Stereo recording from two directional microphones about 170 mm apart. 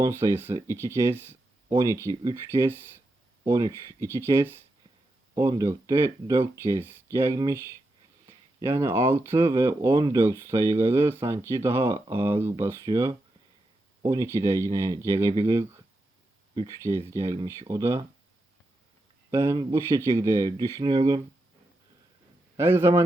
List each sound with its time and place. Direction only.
0.0 s speech: 15° right (ahead or behind)
19.3 s speech: 15° right (ahead or behind)
22.5 s speech: 15° right (ahead or behind)